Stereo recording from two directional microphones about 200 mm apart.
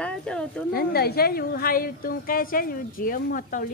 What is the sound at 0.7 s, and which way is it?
A woman's voice, 50° left (ahead or behind).